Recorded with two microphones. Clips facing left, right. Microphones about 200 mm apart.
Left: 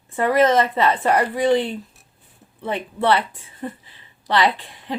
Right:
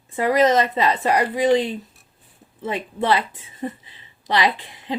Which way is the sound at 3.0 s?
20° right (ahead or behind).